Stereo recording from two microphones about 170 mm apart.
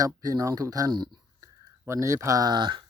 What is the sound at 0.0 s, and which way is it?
Speech, 20° right (ahead or behind).